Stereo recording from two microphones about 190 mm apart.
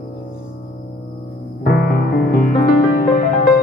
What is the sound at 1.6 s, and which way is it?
Music, 55° left (ahead or behind).